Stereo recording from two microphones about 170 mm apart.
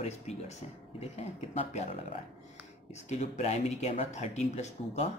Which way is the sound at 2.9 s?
40° left (ahead or behind).